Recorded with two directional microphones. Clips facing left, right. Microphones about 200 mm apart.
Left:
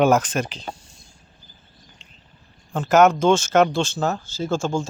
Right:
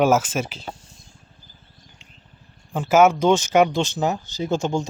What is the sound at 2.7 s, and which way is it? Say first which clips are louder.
Speech: even; 10° right (ahead or behind).